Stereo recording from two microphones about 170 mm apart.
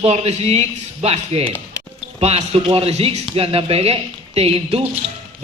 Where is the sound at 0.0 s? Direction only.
40° right (ahead or behind).